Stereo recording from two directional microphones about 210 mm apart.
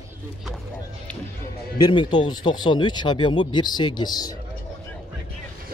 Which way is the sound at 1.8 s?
20° left (ahead or behind).